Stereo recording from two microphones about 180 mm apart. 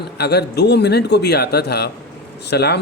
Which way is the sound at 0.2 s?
65° left (ahead or behind).